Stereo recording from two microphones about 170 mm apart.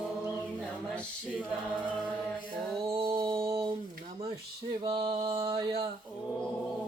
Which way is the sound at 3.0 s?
25° right (ahead or behind).